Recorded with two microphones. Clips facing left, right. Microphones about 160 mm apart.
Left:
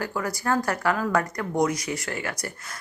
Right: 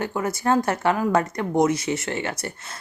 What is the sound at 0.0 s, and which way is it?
Speech, 25° right (ahead or behind).